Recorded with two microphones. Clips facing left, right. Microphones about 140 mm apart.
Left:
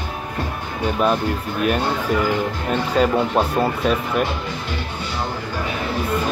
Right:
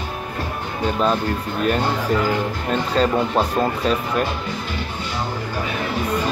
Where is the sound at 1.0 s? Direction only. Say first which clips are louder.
Left 2 dB; 10° left (ahead or behind).